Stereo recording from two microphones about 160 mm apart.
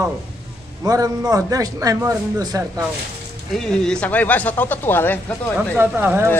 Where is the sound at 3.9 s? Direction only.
10° left (ahead or behind).